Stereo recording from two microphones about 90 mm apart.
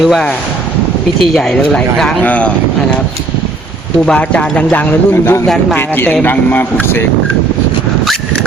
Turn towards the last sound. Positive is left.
turn(degrees=20)  # may be behind; listen again after turning